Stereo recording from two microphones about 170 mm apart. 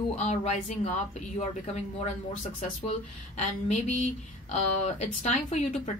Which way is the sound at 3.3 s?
45° left (ahead or behind).